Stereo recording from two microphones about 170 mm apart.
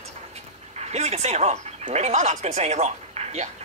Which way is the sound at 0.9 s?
40° right (ahead or behind).